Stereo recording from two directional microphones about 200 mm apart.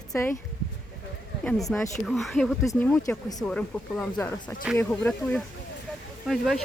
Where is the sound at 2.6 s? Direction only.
10° left (ahead or behind).